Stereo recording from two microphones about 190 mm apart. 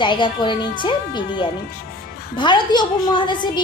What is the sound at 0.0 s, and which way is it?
A woman's voice, 25° left (ahead or behind).